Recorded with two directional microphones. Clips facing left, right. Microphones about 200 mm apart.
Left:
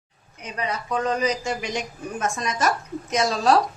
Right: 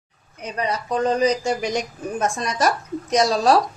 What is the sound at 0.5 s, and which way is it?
Speech, 35° right (ahead or behind).